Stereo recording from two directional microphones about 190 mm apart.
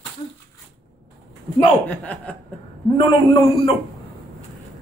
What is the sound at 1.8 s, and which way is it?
Speech, 5° left (ahead or behind).